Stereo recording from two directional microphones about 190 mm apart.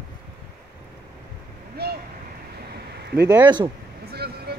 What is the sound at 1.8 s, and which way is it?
Vehicle, 55° right (ahead or behind).